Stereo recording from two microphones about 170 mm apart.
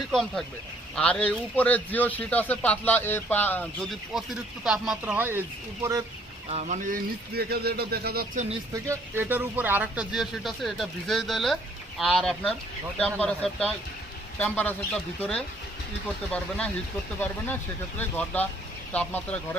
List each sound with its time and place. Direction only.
0.1 s a man's voice: centre (ahead or behind)
4.1 s speech: centre (ahead or behind)
6.5 s speech: 45° right (ahead or behind); by 8.3 s 65° right (ahead or behind)
8.7 s a man's voice: 15° right (ahead or behind); by 19.4 s 10° left (ahead or behind)